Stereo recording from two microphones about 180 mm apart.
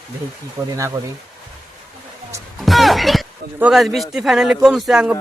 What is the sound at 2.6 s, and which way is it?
Music, centre (ahead or behind).